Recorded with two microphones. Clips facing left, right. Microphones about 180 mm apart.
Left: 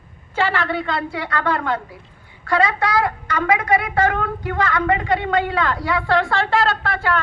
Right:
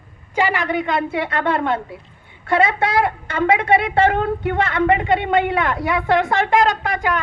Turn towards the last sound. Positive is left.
turn(degrees=-15)  # may be behind; listen again after turning